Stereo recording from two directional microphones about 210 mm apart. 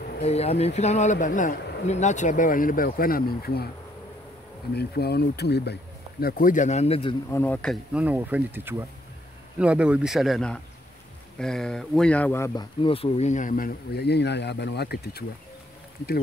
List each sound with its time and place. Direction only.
0.2 s speech: 30° left (ahead or behind); by 3.6 s 45° left (ahead or behind)
4.7 s speech: 50° left (ahead or behind)
6.2 s speech: 40° left (ahead or behind); by 7.2 s 25° left (ahead or behind)
7.2 s speech: 10° left (ahead or behind)
12.8 s speech: 25° left (ahead or behind); by 15.2 s 50° left (ahead or behind)